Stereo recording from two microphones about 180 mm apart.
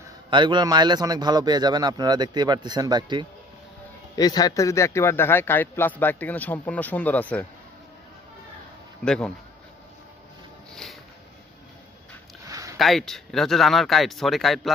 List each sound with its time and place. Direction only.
0.3 s a man's voice: 25° right (ahead or behind)
4.1 s speech: 20° left (ahead or behind)
9.0 s speech: 5° left (ahead or behind)
10.7 s music: centre (ahead or behind)
12.4 s a sound: 20° right (ahead or behind)
12.7 s speech: centre (ahead or behind)